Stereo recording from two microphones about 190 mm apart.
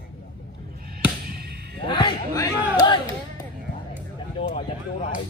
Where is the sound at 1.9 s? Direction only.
25° left (ahead or behind).